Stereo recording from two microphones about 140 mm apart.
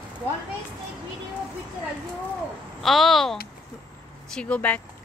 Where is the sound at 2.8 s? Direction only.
Centre (ahead or behind).